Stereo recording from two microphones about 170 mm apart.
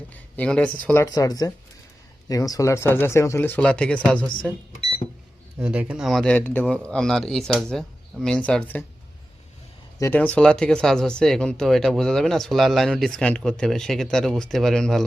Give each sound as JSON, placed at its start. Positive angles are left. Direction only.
{"t": 0.3, "sound": "speech", "side_deg": 5}
{"t": 1.0, "sound": "speech", "side_deg": 20}
{"t": 5.5, "sound": "speech", "side_deg": -5}
{"t": 10.0, "sound": "speech", "side_deg": 10}